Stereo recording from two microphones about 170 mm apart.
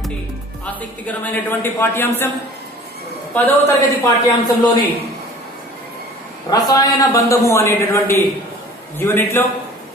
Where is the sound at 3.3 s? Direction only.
10° left (ahead or behind).